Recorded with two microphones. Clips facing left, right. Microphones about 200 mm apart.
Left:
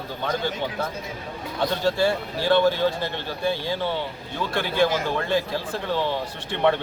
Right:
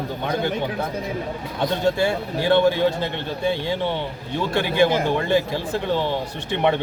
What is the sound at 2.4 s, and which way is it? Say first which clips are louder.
A man's voice: right 2 dB; 15° right (ahead or behind).